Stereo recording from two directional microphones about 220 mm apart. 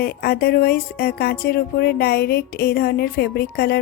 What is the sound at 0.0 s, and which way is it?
A woman's voice, 45° left (ahead or behind).